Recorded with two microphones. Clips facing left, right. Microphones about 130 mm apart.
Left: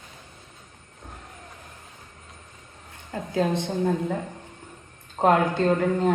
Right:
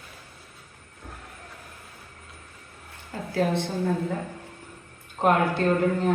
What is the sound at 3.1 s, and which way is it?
Speech, 20° left (ahead or behind).